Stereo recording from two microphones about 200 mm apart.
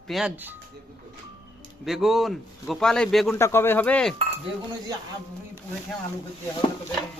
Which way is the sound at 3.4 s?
10° left (ahead or behind).